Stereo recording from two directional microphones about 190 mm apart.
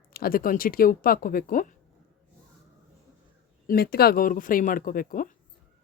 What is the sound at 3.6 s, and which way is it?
Speech, 50° left (ahead or behind).